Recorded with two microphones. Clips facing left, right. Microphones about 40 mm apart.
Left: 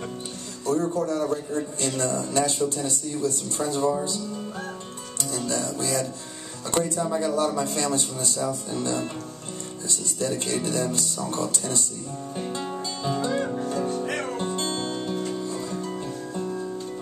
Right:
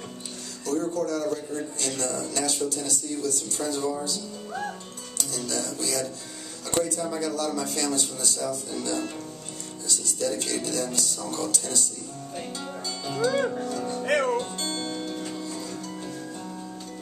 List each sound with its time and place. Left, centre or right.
0.7 s a man's voice: left
5.3 s a man's voice: left
13.6 s music: left
14.3 s music: left